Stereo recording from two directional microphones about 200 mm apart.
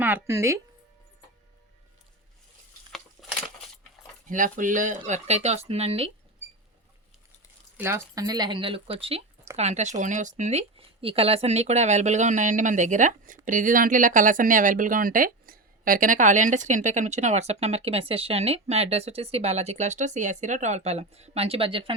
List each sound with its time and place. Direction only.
0.0 s speech: 10° right (ahead or behind)
2.9 s a sound: centre (ahead or behind)
4.3 s speech: 40° right (ahead or behind)
7.8 s speech: 15° right (ahead or behind)